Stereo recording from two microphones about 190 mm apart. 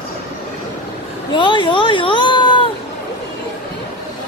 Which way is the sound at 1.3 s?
25° left (ahead or behind).